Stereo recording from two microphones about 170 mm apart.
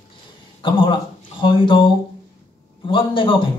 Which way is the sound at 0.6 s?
30° left (ahead or behind).